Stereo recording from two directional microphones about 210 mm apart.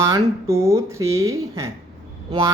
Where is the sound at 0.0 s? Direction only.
15° right (ahead or behind).